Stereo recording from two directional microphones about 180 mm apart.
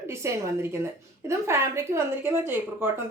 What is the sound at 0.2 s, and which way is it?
A woman's voice, 15° right (ahead or behind).